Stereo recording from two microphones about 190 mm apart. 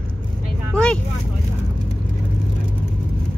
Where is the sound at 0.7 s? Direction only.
5° left (ahead or behind).